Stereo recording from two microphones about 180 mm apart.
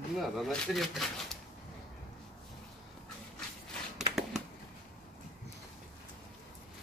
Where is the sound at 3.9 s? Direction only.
5° right (ahead or behind).